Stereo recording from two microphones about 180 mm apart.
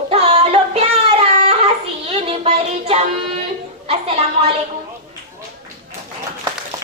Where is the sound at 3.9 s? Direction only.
35° right (ahead or behind).